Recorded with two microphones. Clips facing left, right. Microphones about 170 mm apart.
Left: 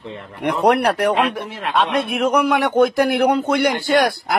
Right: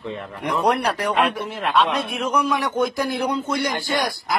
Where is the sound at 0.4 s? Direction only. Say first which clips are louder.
Left 5 dB; 65° left (ahead or behind).